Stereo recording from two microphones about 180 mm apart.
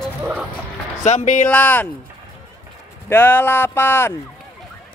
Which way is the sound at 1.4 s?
10° left (ahead or behind).